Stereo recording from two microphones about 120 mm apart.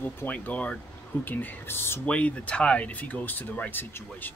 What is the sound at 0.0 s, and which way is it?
Speech, 15° left (ahead or behind).